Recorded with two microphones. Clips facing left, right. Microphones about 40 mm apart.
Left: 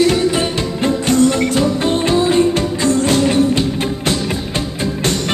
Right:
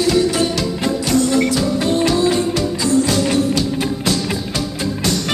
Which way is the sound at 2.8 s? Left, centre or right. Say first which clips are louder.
Left 2 dB; left.